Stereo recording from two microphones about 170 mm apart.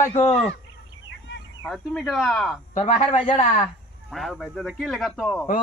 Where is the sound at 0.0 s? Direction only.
40° left (ahead or behind).